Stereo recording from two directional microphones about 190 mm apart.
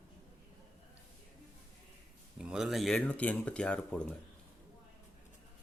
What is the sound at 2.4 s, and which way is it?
Speech, 5° right (ahead or behind).